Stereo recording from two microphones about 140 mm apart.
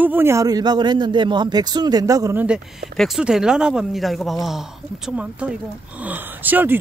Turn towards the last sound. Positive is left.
turn(degrees=-15)  # may be behind; listen again after turning